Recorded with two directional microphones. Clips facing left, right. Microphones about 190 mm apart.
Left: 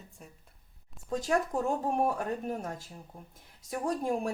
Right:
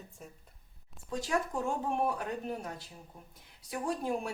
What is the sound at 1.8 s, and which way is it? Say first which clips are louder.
Speech: left 3 dB; 40° left (ahead or behind).